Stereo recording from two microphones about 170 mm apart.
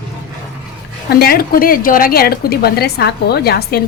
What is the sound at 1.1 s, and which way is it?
A woman's voice, 65° left (ahead or behind).